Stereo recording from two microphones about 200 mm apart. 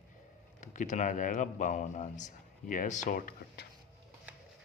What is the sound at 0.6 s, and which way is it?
Speech, 40° left (ahead or behind).